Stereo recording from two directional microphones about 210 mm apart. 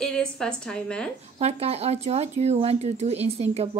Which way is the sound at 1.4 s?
30° right (ahead or behind).